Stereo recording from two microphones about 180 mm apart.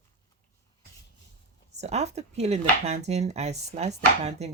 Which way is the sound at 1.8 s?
40° right (ahead or behind).